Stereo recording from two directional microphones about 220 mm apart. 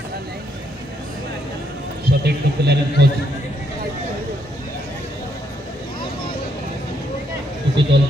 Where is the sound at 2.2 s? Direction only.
50° right (ahead or behind).